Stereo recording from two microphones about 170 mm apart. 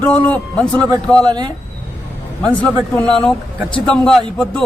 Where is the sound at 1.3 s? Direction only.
25° right (ahead or behind).